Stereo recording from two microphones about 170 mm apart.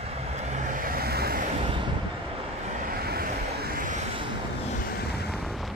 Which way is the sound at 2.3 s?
50° right (ahead or behind).